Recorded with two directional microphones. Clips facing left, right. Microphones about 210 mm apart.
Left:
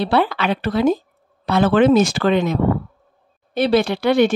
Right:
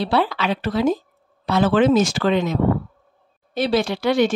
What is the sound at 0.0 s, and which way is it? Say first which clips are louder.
Speech: left 2 dB; 60° left (ahead or behind).